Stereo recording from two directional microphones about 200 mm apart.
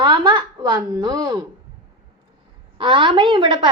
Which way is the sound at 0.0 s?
20° right (ahead or behind).